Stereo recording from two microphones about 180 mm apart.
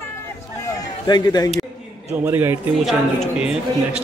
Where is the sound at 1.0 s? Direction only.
25° left (ahead or behind).